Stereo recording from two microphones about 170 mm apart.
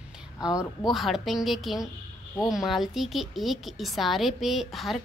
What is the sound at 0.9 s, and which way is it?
A woman's voice, centre (ahead or behind).